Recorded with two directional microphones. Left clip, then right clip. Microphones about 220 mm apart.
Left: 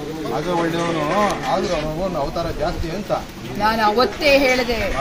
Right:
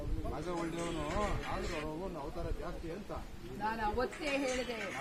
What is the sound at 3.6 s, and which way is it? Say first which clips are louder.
Speech: left 19 dB; 35° left (ahead or behind).